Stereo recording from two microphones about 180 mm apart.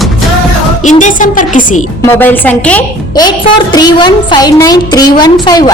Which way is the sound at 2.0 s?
10° left (ahead or behind).